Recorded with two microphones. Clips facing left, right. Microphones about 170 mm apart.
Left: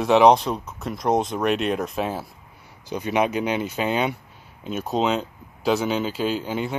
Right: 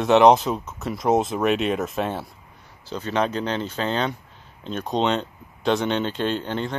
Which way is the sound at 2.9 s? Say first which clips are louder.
Left 2 dB; 15° left (ahead or behind).